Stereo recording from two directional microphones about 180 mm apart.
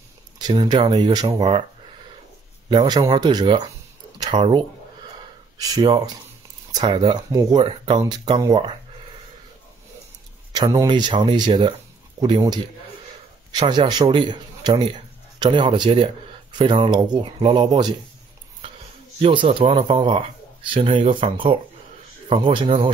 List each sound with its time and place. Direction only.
0.4 s speech: 20° right (ahead or behind)
2.7 s speech: 20° right (ahead or behind)
10.5 s a man's voice: 20° right (ahead or behind)
18.6 s a sound: 25° right (ahead or behind)
19.1 s speech: 30° right (ahead or behind)